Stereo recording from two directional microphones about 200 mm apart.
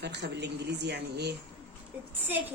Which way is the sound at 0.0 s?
60° right (ahead or behind).